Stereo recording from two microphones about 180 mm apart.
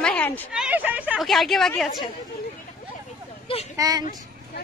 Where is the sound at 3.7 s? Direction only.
20° right (ahead or behind).